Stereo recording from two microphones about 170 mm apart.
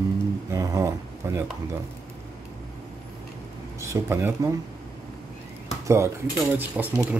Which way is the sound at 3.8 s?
15° right (ahead or behind).